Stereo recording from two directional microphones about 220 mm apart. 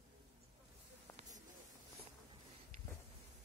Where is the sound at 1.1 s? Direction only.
35° right (ahead or behind).